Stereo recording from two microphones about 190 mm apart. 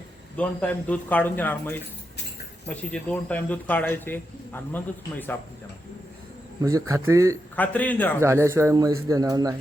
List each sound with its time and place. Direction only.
0.3 s speech: 5° left (ahead or behind)
6.6 s a man's voice: 15° right (ahead or behind)
7.5 s speech: 10° left (ahead or behind)
8.2 s a man's voice: 15° right (ahead or behind)